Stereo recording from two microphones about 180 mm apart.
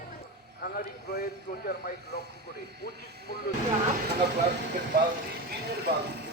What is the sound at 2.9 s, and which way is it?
Speech, 65° right (ahead or behind).